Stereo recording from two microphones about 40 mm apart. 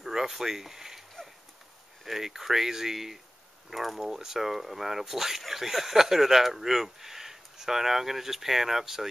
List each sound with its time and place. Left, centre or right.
0.0 s speech: centre
2.0 s speech: centre